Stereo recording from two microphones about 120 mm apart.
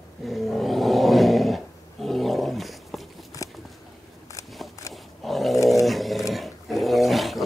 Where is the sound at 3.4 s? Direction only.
25° left (ahead or behind).